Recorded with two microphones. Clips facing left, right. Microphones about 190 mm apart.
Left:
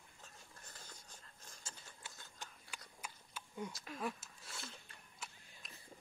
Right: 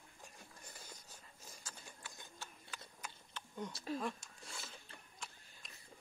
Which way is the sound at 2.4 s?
15° left (ahead or behind).